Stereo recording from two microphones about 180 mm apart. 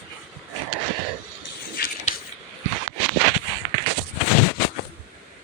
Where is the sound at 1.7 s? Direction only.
55° left (ahead or behind).